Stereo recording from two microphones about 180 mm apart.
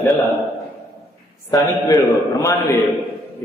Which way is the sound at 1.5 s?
20° left (ahead or behind).